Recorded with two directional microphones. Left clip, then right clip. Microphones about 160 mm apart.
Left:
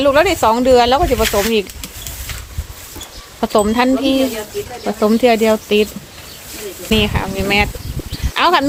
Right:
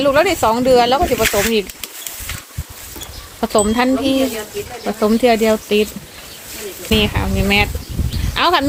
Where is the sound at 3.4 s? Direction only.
5° left (ahead or behind).